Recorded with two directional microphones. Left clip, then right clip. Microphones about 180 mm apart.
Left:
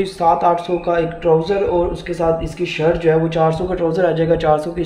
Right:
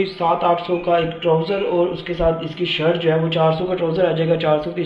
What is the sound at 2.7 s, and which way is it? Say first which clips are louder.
Speech: left 3 dB; 70° left (ahead or behind).